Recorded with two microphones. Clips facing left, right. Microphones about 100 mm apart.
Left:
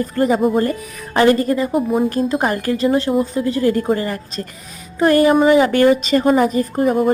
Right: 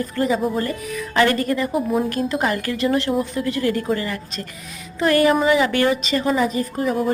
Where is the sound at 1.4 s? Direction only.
30° left (ahead or behind).